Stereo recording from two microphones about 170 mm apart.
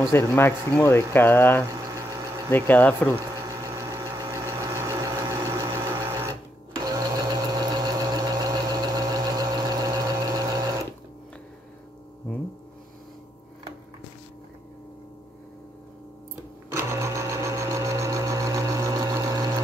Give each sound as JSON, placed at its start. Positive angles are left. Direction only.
{"t": 0.0, "sound": "speech", "side_deg": 15}
{"t": 3.4, "sound": "a sound", "side_deg": -15}
{"t": 16.7, "sound": "sewing machine", "side_deg": -15}